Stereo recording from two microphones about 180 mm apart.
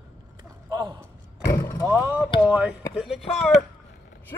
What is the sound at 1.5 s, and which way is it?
Vehicle, 15° left (ahead or behind).